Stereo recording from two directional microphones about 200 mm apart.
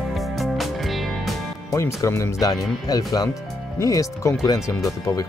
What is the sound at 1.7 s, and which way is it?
Speech, 15° left (ahead or behind).